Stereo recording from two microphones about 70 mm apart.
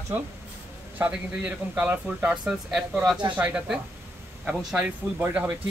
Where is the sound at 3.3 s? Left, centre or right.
Right.